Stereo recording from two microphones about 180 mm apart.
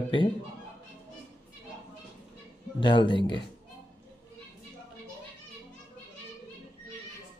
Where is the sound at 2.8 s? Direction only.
25° left (ahead or behind).